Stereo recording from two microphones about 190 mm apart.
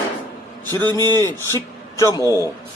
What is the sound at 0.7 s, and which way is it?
A man's voice, 15° left (ahead or behind).